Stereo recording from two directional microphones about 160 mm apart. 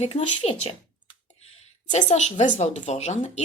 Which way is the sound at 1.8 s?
50° left (ahead or behind).